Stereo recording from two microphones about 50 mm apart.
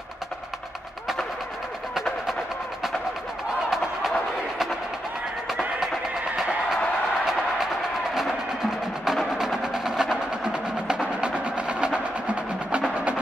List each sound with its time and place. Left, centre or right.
5.5 s music: centre
9.0 s percussion: centre